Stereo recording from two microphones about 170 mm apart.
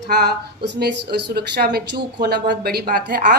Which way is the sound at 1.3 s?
70° right (ahead or behind).